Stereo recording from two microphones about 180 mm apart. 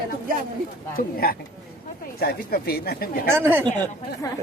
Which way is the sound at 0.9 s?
55° left (ahead or behind).